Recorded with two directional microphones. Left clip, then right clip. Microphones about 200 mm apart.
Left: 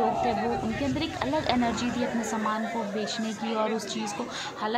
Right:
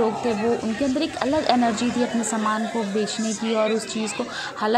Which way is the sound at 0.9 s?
20° right (ahead or behind).